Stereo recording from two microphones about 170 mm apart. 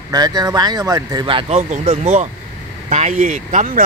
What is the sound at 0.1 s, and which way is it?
Speech, 25° right (ahead or behind).